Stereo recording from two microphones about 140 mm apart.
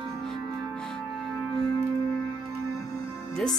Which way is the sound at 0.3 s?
5° left (ahead or behind).